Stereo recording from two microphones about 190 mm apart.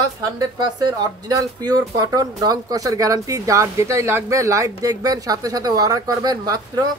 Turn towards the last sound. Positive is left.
turn(degrees=-20)  # may be behind; listen again after turning